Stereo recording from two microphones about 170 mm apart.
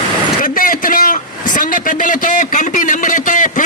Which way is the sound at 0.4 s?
55° left (ahead or behind).